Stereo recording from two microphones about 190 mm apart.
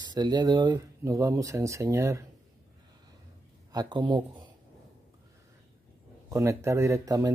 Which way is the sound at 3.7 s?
20° right (ahead or behind).